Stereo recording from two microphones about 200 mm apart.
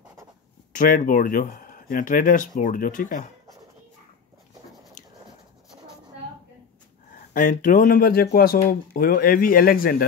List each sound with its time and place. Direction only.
0.7 s speech: 45° left (ahead or behind)
7.3 s speech: 40° left (ahead or behind)